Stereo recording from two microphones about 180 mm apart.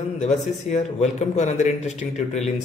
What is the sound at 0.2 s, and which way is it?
A man's voice, 40° left (ahead or behind).